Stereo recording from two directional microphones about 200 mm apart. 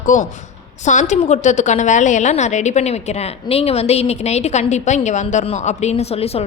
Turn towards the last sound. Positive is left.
turn(degrees=30)  # may be behind; listen again after turning